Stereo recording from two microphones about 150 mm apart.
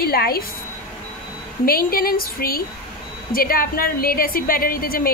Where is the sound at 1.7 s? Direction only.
75° left (ahead or behind).